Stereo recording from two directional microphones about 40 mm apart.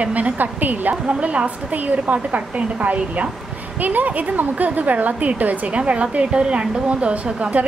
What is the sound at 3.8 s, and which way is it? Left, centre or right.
A woman's voice, right.